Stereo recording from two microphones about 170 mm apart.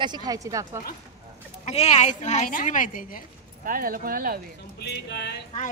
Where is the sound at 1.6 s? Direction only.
40° left (ahead or behind).